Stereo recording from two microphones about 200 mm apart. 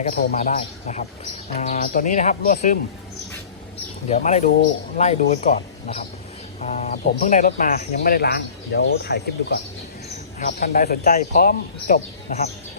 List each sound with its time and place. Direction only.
0.0 s speech: 40° left (ahead or behind)
4.1 s speech: 35° left (ahead or behind); by 9.6 s 55° left (ahead or behind)
10.3 s speech: 40° left (ahead or behind)